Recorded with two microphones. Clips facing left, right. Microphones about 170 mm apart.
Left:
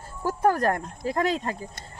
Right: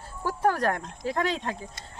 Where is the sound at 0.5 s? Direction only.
5° left (ahead or behind).